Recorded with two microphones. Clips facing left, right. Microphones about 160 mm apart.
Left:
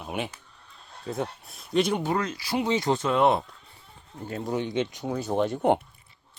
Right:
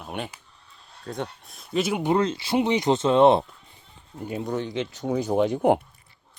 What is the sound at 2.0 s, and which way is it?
Speech, 25° right (ahead or behind).